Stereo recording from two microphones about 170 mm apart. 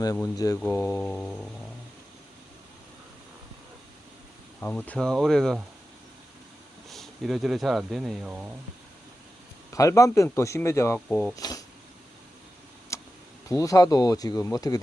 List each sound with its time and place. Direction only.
0.0 s speech: 20° left (ahead or behind); by 1.5 s 5° left (ahead or behind)
4.6 s speech: 10° left (ahead or behind)
6.9 s speech: centre (ahead or behind)
9.7 s speech: 20° left (ahead or behind)
11.1 s speech: 5° left (ahead or behind)
11.3 s speech: 20° left (ahead or behind)
12.9 s a sound: 15° left (ahead or behind)
13.5 s speech: 20° left (ahead or behind)